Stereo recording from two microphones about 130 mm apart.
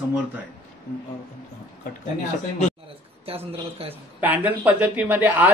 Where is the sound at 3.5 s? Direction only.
50° right (ahead or behind).